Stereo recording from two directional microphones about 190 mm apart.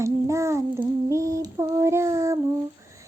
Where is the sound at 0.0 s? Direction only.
15° right (ahead or behind).